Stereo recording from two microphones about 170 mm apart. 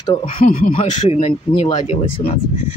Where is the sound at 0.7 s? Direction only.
35° left (ahead or behind).